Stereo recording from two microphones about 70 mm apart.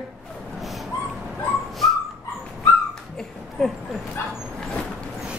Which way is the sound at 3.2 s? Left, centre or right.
Centre.